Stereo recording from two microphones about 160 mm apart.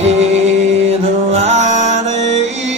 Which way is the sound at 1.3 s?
45° right (ahead or behind).